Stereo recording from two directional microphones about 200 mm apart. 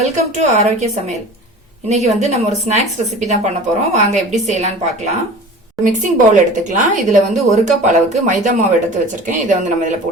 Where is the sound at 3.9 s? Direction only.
35° right (ahead or behind).